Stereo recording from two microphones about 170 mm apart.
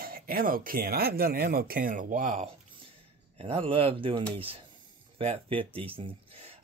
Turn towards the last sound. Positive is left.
turn(degrees=-35)  # may be behind; listen again after turning